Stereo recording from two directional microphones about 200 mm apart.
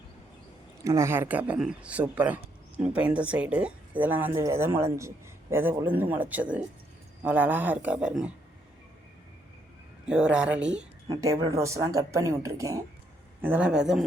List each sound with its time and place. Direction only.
0.9 s speech: 15° right (ahead or behind)
10.1 s speech: 5° right (ahead or behind)
11.1 s speech: 15° right (ahead or behind)